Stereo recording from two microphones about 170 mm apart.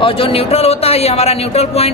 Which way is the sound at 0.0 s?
35° left (ahead or behind).